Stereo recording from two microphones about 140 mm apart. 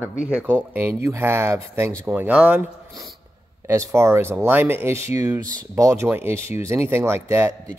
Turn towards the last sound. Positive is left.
turn(degrees=-20)  # may be behind; listen again after turning